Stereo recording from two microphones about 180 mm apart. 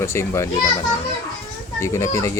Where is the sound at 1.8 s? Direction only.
15° left (ahead or behind).